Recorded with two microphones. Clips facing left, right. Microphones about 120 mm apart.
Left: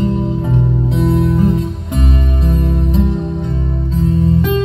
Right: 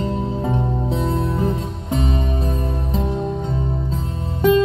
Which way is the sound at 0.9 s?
30° right (ahead or behind).